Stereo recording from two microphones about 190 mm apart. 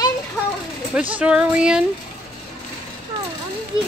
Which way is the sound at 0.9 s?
10° right (ahead or behind).